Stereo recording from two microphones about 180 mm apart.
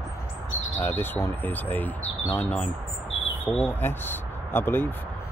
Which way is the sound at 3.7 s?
10° left (ahead or behind).